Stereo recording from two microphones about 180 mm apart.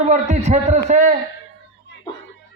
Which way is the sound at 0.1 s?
40° right (ahead or behind).